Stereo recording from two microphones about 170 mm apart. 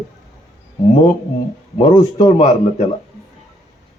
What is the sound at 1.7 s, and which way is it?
Speech, 25° left (ahead or behind).